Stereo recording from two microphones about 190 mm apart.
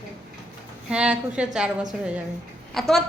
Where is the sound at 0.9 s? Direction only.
5° right (ahead or behind).